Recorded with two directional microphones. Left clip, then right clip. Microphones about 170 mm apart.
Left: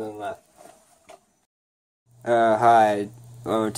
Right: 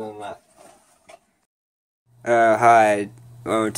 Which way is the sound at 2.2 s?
Centre (ahead or behind).